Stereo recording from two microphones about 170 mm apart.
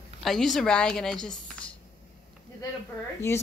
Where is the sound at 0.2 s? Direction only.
Centre (ahead or behind).